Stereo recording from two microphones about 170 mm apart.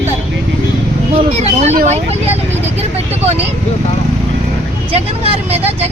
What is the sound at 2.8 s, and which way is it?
Speech, 35° right (ahead or behind).